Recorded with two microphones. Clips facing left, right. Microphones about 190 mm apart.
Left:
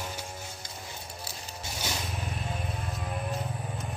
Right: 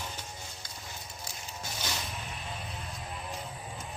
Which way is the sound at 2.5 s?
50° left (ahead or behind).